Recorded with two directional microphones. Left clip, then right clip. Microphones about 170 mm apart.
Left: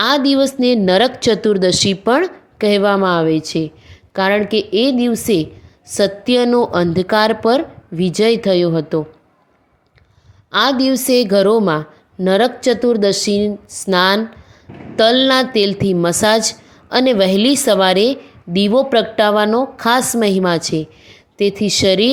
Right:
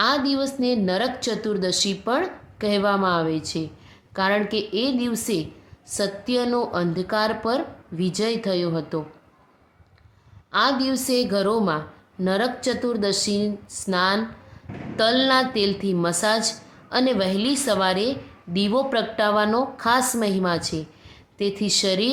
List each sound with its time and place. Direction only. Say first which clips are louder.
0.0 s a woman's voice: left 8 dB; 45° left (ahead or behind)
10.5 s a woman's voice: left 7 dB; 40° left (ahead or behind)